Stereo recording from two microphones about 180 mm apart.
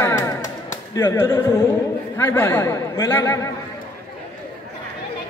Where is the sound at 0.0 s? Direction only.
15° left (ahead or behind).